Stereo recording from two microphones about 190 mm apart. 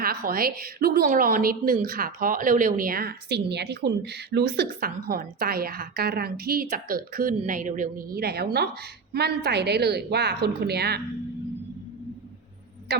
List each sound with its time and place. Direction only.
0.0 s a woman's voice: 50° right (ahead or behind)